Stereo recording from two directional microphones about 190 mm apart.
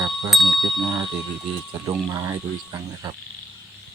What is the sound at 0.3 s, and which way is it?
Speech, centre (ahead or behind).